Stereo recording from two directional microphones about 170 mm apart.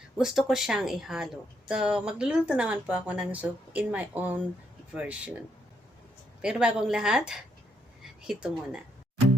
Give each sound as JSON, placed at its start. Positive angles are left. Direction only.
{"t": 0.2, "sound": "a woman's voice", "side_deg": 0}
{"t": 6.4, "sound": "speech", "side_deg": -5}